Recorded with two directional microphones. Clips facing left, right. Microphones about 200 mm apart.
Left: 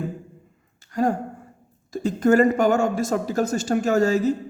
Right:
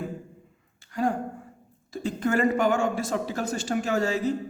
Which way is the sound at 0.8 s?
45° left (ahead or behind).